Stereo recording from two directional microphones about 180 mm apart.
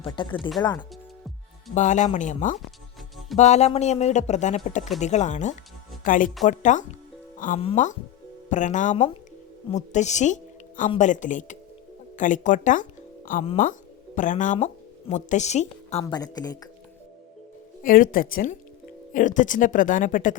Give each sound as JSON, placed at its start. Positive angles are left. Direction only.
{"t": 0.0, "sound": "a woman's voice", "side_deg": 30}
{"t": 1.7, "sound": "speech", "side_deg": 40}
{"t": 13.4, "sound": "speech", "side_deg": 30}
{"t": 14.2, "sound": "speech", "side_deg": 45}
{"t": 16.0, "sound": "a woman's voice", "side_deg": 20}
{"t": 17.8, "sound": "speech", "side_deg": 50}